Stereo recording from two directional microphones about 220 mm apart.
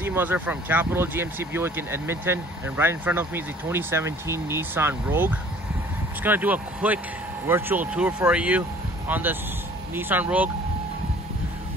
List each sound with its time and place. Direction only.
0.0 s speech: 10° right (ahead or behind)